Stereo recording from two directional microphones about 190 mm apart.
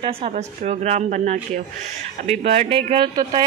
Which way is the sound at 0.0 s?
30° right (ahead or behind).